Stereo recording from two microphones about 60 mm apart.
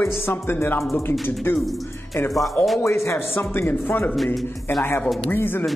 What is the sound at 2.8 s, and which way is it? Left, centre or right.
Speech, left.